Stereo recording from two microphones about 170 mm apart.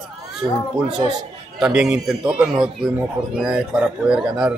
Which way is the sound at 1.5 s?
5° right (ahead or behind).